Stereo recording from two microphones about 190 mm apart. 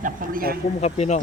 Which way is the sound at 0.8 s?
35° left (ahead or behind).